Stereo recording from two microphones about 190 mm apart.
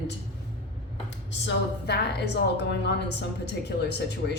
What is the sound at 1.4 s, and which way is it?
Speech, 60° left (ahead or behind).